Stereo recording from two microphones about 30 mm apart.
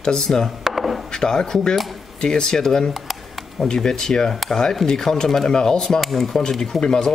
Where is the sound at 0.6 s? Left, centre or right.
Centre.